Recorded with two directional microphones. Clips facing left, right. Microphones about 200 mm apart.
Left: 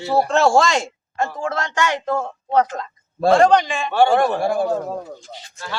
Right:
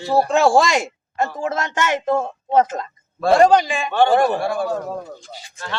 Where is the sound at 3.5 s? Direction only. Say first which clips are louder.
Right 1 dB; 5° right (ahead or behind).